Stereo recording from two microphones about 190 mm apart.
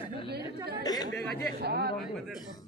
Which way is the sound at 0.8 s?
20° left (ahead or behind).